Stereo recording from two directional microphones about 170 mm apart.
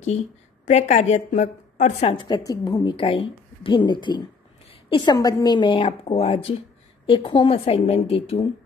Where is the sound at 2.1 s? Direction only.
25° left (ahead or behind).